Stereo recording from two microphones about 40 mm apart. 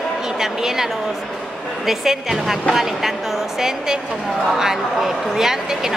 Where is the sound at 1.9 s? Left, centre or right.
Centre.